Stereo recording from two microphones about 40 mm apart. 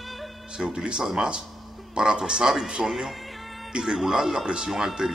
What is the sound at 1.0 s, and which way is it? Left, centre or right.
A man's voice, centre.